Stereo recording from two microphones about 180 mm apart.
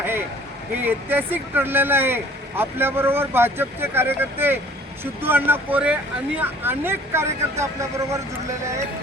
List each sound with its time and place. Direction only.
0.8 s speech: 10° right (ahead or behind)